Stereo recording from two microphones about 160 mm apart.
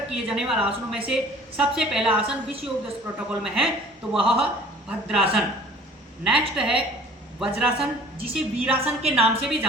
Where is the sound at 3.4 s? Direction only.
5° right (ahead or behind).